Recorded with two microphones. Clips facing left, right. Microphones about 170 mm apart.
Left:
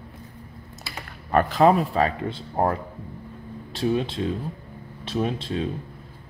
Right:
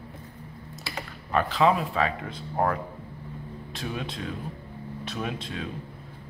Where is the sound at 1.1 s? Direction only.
50° left (ahead or behind); by 5.7 s 30° left (ahead or behind).